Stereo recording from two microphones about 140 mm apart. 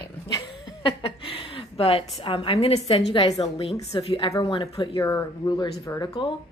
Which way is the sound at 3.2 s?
25° left (ahead or behind).